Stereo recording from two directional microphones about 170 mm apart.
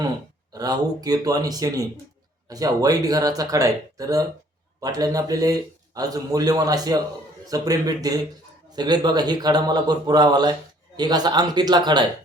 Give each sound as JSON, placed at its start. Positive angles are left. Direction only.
{"t": 0.5, "sound": "a man's voice", "side_deg": -20}